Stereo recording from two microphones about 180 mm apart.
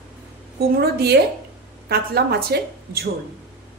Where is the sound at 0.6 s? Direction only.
60° right (ahead or behind).